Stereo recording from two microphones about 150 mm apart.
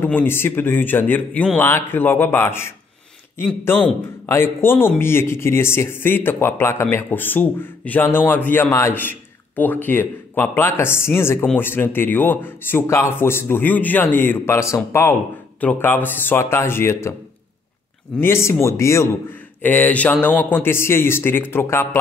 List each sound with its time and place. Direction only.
0.0 s speech: 15° left (ahead or behind)
18.1 s speech: 15° left (ahead or behind)